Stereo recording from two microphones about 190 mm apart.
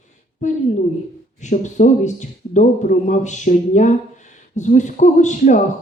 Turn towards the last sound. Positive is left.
turn(degrees=40)  # may be behind; listen again after turning